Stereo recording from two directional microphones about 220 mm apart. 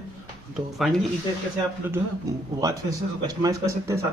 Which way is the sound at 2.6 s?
15° right (ahead or behind).